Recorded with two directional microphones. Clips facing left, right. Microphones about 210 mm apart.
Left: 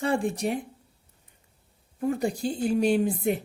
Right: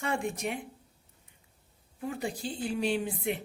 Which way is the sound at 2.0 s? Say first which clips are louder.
Left 8 dB; 45° left (ahead or behind).